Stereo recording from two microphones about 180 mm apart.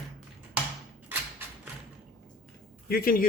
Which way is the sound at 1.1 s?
10° right (ahead or behind).